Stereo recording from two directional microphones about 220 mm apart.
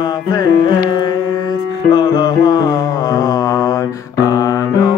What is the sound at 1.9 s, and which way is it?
Music, 20° left (ahead or behind).